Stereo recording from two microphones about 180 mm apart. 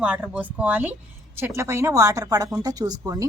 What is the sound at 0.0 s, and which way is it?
A woman's voice, 10° right (ahead or behind).